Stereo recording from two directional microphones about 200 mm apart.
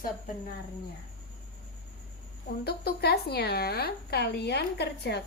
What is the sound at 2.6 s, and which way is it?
Speech, 55° left (ahead or behind).